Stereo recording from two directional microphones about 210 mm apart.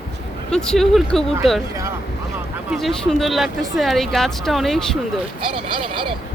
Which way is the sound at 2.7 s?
Centre (ahead or behind).